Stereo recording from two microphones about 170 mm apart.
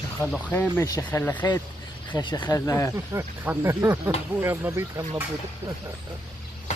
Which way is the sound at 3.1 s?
15° right (ahead or behind).